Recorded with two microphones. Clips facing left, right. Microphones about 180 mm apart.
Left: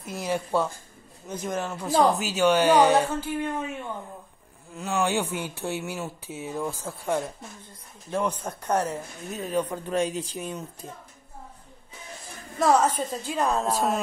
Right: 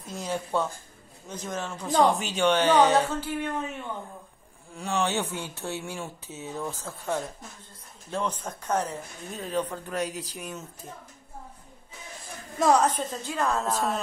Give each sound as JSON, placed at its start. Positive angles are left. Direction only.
{"t": 0.2, "sound": "speech", "side_deg": 10}
{"t": 4.7, "sound": "speech", "side_deg": 0}
{"t": 9.8, "sound": "speech", "side_deg": 25}
{"t": 12.5, "sound": "speech", "side_deg": 5}